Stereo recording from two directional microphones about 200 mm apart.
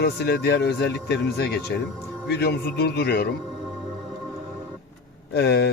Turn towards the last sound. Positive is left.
turn(degrees=55)  # may be behind; listen again after turning